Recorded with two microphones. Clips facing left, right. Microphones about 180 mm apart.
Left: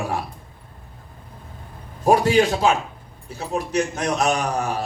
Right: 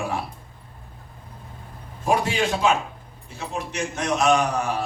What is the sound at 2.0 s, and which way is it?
Speech, 35° left (ahead or behind).